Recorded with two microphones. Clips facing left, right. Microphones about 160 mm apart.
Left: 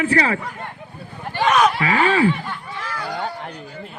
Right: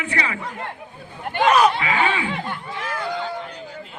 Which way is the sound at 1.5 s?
30° right (ahead or behind).